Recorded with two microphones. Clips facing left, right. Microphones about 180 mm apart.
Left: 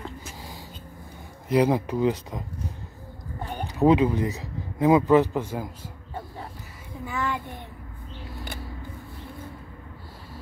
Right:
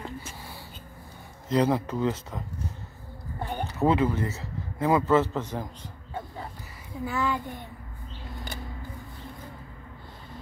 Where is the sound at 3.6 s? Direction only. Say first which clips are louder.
Left 4 dB; 15° left (ahead or behind).